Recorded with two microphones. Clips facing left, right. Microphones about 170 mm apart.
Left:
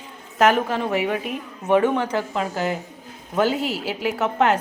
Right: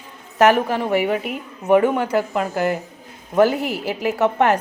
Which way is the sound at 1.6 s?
10° right (ahead or behind).